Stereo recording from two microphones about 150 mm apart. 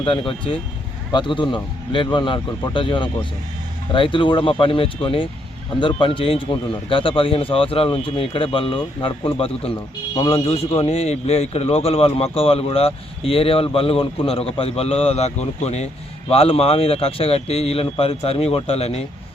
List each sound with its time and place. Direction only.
0.0 s speech: 35° left (ahead or behind)